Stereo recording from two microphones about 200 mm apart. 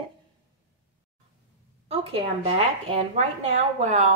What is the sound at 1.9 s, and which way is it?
A woman's voice, 30° right (ahead or behind).